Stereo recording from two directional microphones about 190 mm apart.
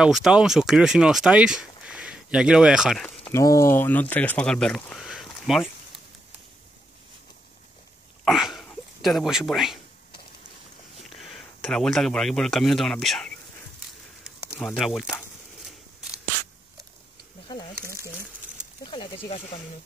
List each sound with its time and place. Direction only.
0.0 s speech: 5° right (ahead or behind)
3.3 s speech: 15° left (ahead or behind); by 5.7 s centre (ahead or behind)
8.3 s speech: centre (ahead or behind)
11.1 s speech: centre (ahead or behind)
14.6 s speech: centre (ahead or behind)
17.5 s snake: 25° left (ahead or behind)
18.9 s speech: 25° left (ahead or behind)